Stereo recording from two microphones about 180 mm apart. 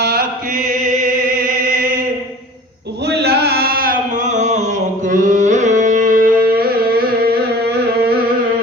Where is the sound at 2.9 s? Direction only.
65° right (ahead or behind).